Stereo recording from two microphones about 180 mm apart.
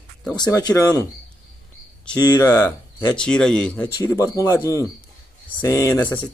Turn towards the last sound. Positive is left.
turn(degrees=15)  # may be behind; listen again after turning